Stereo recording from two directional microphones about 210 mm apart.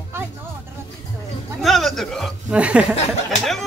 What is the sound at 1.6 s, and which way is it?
Speech, centre (ahead or behind).